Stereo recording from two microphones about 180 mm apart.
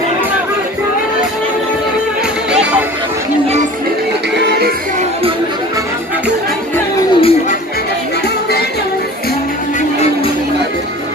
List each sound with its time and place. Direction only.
7.2 s music: 30° left (ahead or behind)